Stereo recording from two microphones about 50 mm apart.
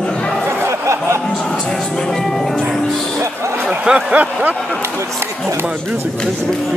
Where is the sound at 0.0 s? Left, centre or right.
Left.